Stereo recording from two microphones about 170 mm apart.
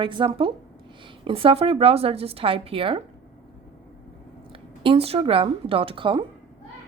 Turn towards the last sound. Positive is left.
turn(degrees=-30)  # may be behind; listen again after turning